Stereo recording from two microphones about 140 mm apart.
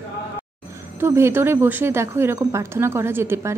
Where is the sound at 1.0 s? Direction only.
20° right (ahead or behind).